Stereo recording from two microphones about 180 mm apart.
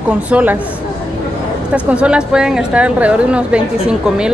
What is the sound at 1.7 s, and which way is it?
A woman's voice, 5° right (ahead or behind).